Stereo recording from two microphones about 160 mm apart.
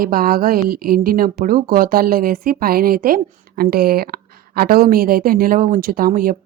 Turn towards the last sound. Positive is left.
turn(degrees=-60)  # may be behind; listen again after turning